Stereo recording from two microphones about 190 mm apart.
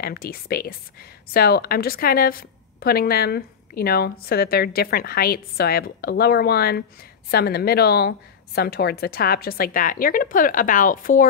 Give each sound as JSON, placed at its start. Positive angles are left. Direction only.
{"t": 0.0, "sound": "speech", "side_deg": 50}